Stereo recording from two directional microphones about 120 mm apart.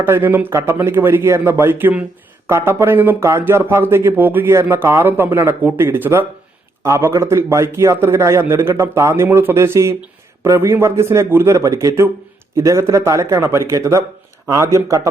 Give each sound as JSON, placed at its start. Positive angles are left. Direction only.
{"t": 0.0, "sound": "speech", "side_deg": -15}